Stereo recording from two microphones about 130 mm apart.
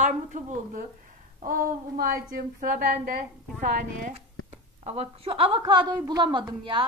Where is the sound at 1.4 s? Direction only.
90° right.